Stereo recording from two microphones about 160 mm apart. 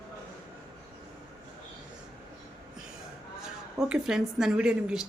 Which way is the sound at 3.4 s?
5° right (ahead or behind).